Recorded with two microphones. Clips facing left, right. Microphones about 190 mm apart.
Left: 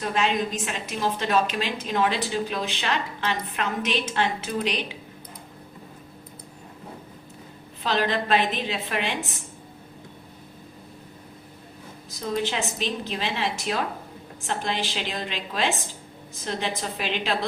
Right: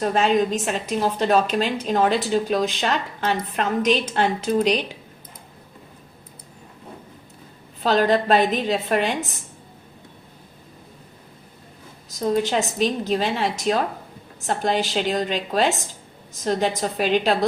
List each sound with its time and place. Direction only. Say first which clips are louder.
0.0 s a woman's voice: right 6 dB; 40° right (ahead or behind)
7.9 s a woman's voice: right 6 dB; 40° right (ahead or behind)
12.2 s a woman's voice: right 6 dB; 40° right (ahead or behind)